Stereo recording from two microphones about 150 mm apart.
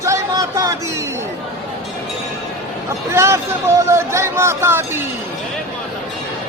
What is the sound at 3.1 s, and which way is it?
Speech, 20° right (ahead or behind).